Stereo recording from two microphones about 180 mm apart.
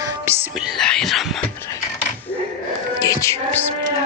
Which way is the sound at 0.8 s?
5° left (ahead or behind).